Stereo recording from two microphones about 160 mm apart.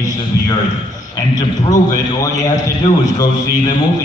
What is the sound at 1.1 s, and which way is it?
Speech, 25° left (ahead or behind).